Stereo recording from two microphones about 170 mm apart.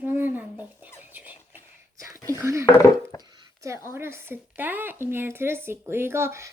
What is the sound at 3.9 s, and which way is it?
Speech, 15° right (ahead or behind).